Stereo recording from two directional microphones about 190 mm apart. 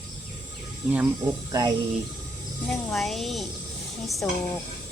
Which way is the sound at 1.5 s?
20° right (ahead or behind).